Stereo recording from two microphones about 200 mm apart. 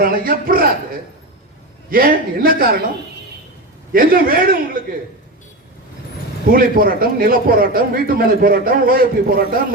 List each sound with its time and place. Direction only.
0.0 s a man's voice: 45° right (ahead or behind)
1.9 s a man's voice: 45° right (ahead or behind)
3.9 s a man's voice: 45° right (ahead or behind)
6.4 s a man's voice: 45° right (ahead or behind)